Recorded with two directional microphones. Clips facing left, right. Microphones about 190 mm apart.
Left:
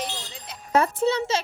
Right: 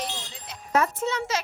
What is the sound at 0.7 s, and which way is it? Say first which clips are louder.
Speech: left 3 dB; 30° left (ahead or behind).